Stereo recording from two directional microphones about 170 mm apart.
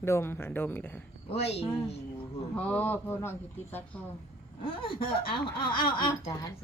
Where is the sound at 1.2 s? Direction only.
35° left (ahead or behind).